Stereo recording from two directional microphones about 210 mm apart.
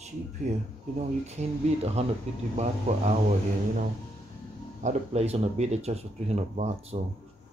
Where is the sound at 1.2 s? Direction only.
30° right (ahead or behind).